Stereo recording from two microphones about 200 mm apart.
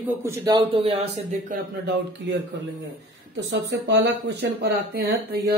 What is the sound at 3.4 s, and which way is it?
Speech, 60° right (ahead or behind).